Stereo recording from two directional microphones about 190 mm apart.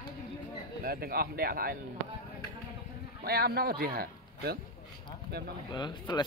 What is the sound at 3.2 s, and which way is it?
A man's voice, 55° right (ahead or behind).